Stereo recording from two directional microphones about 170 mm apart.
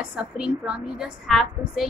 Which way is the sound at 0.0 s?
5° right (ahead or behind).